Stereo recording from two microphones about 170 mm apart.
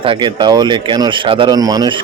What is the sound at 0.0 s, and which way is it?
Speech, 30° right (ahead or behind).